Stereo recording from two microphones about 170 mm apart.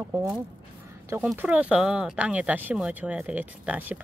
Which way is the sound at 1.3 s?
5° right (ahead or behind).